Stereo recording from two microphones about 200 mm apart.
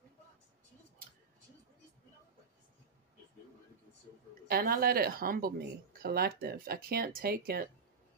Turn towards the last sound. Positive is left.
turn(degrees=-45)  # may be behind; listen again after turning